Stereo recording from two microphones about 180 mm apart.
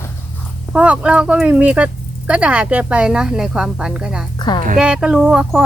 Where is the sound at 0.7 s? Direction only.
5° right (ahead or behind).